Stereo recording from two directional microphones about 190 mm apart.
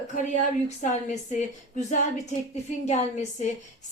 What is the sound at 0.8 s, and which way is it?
Speech, 40° left (ahead or behind).